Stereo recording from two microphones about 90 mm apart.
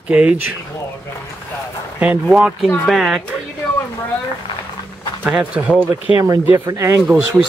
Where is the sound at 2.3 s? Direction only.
5° right (ahead or behind).